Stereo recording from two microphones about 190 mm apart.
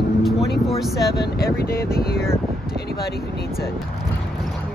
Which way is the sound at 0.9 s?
60° left (ahead or behind).